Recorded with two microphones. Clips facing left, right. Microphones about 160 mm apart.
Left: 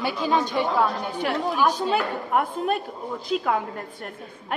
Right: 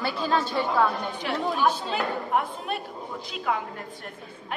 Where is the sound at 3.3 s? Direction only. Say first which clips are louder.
Left 12 dB; 45° left (ahead or behind).